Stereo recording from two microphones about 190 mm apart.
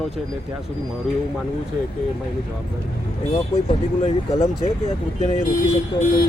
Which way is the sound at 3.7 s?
30° left (ahead or behind).